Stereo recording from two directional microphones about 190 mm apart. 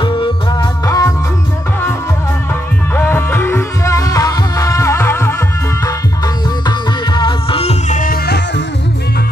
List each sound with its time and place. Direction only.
0.0 s music: 25° left (ahead or behind)
3.0 s music: 10° left (ahead or behind); by 8.6 s 55° left (ahead or behind)